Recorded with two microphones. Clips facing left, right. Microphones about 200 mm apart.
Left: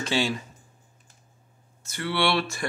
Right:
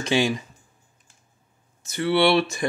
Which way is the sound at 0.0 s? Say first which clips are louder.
Right 4 dB; 15° right (ahead or behind).